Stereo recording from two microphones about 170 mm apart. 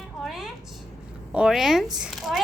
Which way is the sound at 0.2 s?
Centre (ahead or behind).